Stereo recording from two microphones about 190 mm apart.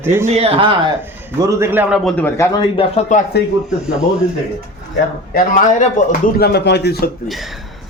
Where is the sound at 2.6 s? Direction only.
25° left (ahead or behind).